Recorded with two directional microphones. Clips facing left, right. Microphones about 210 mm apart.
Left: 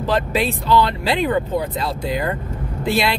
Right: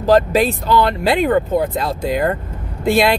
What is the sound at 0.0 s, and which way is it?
Speech, 45° right (ahead or behind).